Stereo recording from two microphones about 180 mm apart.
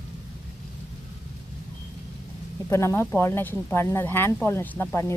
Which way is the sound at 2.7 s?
15° left (ahead or behind).